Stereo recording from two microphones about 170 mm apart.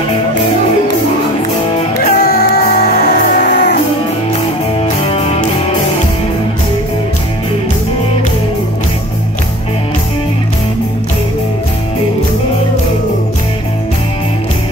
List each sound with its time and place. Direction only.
2.0 s music: 65° left (ahead or behind); by 3.7 s 80° left
4.8 s music: 35° left (ahead or behind)